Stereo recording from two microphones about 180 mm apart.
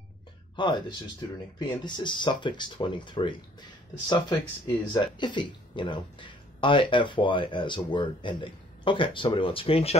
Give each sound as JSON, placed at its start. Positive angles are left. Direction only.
{"t": 0.6, "sound": "speech", "side_deg": 25}